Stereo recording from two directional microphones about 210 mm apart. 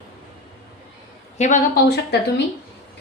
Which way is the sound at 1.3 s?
35° left (ahead or behind).